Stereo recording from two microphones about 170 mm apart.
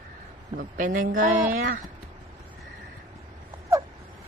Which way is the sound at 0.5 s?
50° right (ahead or behind).